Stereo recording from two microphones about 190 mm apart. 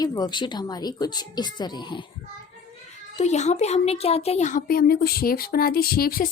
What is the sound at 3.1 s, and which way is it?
Speech, 35° left (ahead or behind).